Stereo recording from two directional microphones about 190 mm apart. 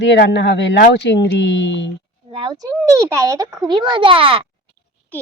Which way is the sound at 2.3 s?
20° right (ahead or behind).